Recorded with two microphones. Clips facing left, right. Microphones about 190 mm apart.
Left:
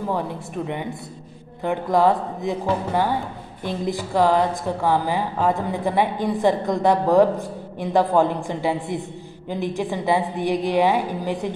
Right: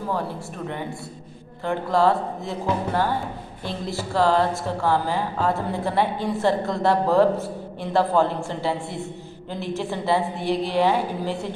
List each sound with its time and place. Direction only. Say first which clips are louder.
1.6 s a woman's voice: left 2 dB; 15° left (ahead or behind)